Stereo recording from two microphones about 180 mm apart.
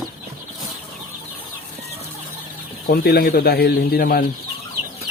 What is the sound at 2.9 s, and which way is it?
Speech, 60° left (ahead or behind).